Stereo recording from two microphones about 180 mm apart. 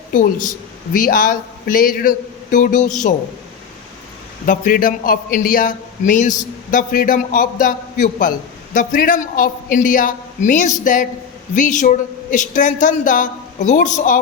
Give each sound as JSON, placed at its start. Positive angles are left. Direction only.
{"t": 0.1, "sound": "a man's voice", "side_deg": 45}
{"t": 4.4, "sound": "a man's voice", "side_deg": 50}